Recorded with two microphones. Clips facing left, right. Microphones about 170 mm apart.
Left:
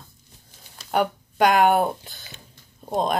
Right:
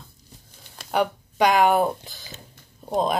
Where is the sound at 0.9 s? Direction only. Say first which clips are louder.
Even; centre (ahead or behind).